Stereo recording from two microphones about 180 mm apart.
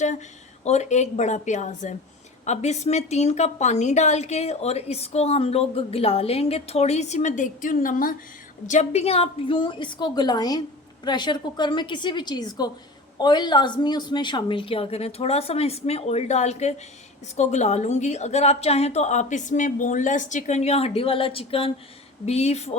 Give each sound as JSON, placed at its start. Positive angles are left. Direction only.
{"t": 0.6, "sound": "a woman's voice", "side_deg": 40}